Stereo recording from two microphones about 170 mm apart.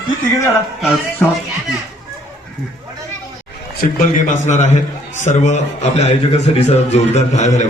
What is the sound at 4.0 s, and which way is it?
A man's voice, 50° left (ahead or behind).